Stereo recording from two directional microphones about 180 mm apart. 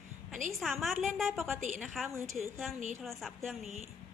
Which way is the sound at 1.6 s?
45° right (ahead or behind).